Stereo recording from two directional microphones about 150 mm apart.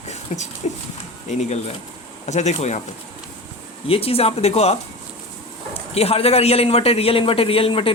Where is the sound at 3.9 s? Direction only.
40° left (ahead or behind).